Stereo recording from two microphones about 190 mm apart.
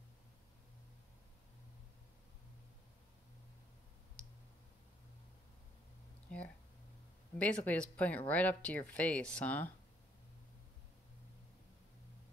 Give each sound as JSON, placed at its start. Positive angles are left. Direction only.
{"t": 4.2, "sound": "clicking", "side_deg": 5}
{"t": 6.2, "sound": "a sound", "side_deg": 5}
{"t": 7.3, "sound": "speech", "side_deg": 5}